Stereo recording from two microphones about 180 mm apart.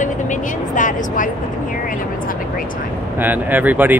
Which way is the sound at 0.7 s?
45° left (ahead or behind).